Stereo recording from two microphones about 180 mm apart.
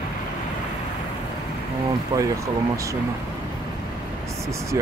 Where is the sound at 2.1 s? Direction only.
25° right (ahead or behind).